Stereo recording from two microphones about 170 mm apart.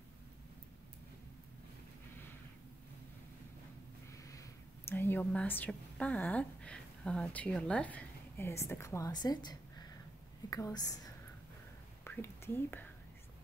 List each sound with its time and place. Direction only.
4.1 s a woman's voice: 20° left (ahead or behind)
12.0 s speech: 10° left (ahead or behind)